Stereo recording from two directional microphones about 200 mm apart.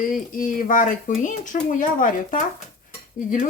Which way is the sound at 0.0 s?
40° left (ahead or behind).